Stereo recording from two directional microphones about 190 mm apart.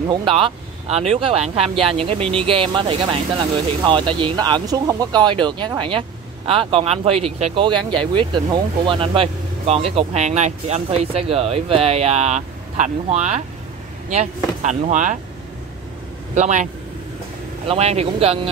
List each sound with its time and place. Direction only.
0.1 s speech: 25° right (ahead or behind)
16.3 s speech: 40° right (ahead or behind)
17.6 s speech: 35° right (ahead or behind)